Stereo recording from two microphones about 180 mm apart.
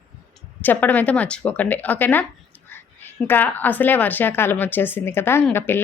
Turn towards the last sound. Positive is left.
turn(degrees=10)  # may be behind; listen again after turning